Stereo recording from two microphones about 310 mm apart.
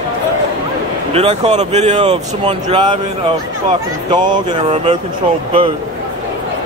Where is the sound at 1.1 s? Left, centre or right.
Right.